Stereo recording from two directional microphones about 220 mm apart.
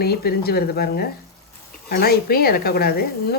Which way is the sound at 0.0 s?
45° left (ahead or behind).